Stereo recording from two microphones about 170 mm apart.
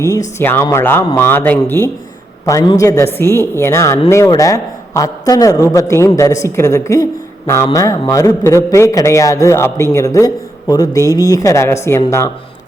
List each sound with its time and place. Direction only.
0.0 s a woman's voice: 20° left (ahead or behind)